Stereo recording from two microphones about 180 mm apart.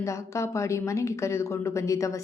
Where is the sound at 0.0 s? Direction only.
15° left (ahead or behind).